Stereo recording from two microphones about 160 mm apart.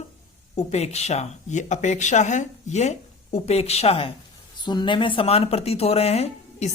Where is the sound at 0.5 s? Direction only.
40° left (ahead or behind).